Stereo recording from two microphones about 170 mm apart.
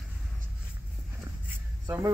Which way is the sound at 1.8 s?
15° right (ahead or behind).